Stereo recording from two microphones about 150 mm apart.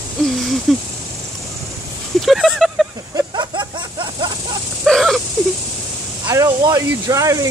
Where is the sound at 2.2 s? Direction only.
Centre (ahead or behind).